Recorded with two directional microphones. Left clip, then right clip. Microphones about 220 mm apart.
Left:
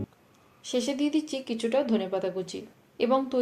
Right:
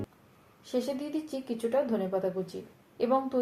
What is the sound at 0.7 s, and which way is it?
A woman's voice, 25° left (ahead or behind).